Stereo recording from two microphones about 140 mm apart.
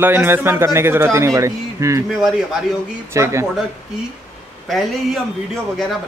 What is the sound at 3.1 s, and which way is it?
Speech, 20° right (ahead or behind).